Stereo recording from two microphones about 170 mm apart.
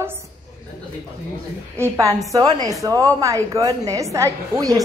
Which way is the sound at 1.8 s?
20° right (ahead or behind).